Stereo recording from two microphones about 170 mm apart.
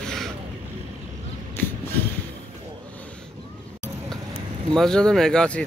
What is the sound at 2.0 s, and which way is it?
Vehicle, 10° left (ahead or behind).